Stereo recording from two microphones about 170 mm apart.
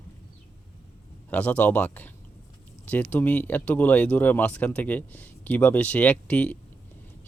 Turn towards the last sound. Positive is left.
turn(degrees=5)  # may be behind; listen again after turning